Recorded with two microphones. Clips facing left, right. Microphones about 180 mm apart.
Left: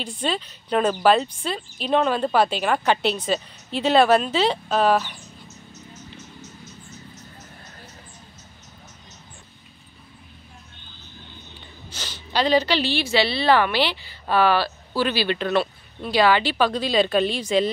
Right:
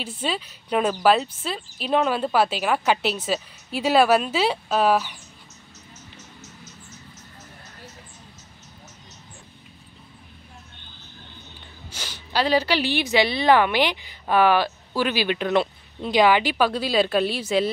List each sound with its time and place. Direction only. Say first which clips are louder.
0.0 s a woman's voice: left 2 dB; 5° right (ahead or behind)
11.9 s a woman's voice: left 1 dB; 10° right (ahead or behind)